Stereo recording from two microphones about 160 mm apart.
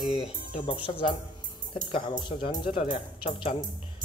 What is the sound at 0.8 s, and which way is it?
Speech, 35° left (ahead or behind).